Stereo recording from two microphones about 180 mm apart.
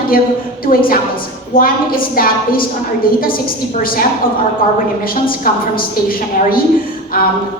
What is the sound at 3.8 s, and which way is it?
A woman's voice, 50° left (ahead or behind).